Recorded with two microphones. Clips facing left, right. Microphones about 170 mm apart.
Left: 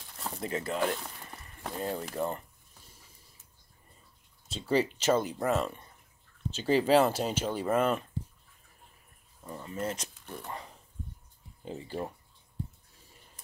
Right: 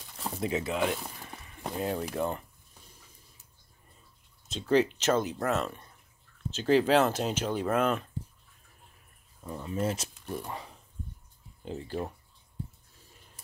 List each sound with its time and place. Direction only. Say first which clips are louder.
0.4 s speech: right 2 dB; 5° right (ahead or behind)
4.5 s speech: right 3 dB; 10° left (ahead or behind)
9.6 s speech: right 4 dB; 10° right (ahead or behind)
11.6 s speech: right 2 dB; 5° left (ahead or behind)